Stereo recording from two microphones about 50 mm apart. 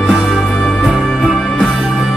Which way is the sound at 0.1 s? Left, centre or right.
Centre.